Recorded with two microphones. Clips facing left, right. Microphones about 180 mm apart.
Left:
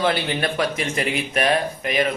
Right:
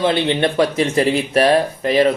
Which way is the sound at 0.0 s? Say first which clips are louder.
Right 5 dB; 25° right (ahead or behind).